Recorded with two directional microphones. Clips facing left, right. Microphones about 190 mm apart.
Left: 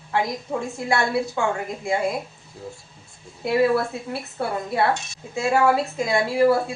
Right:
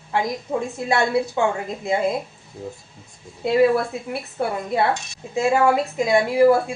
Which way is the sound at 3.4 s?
20° right (ahead or behind).